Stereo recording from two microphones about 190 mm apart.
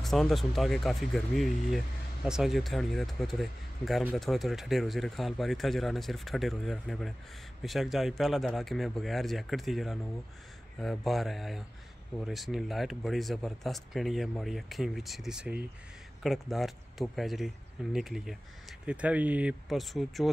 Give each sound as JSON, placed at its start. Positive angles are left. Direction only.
{"t": 0.0, "sound": "speech", "side_deg": 0}